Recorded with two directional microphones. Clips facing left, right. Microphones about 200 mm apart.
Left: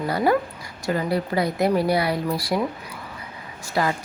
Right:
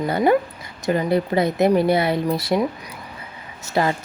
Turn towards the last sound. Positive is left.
turn(degrees=-25)  # may be behind; listen again after turning